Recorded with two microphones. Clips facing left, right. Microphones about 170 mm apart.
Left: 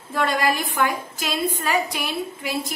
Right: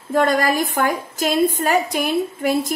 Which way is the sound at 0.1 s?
45° right (ahead or behind).